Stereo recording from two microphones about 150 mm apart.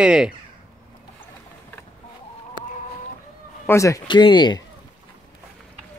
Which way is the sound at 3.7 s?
20° left (ahead or behind).